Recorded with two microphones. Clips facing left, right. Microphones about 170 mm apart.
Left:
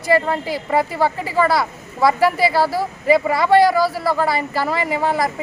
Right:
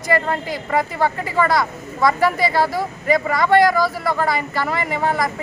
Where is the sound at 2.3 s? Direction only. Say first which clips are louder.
Left 2 dB; 5° left (ahead or behind).